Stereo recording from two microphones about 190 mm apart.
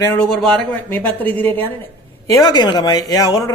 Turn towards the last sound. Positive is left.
turn(degrees=20)  # may be behind; listen again after turning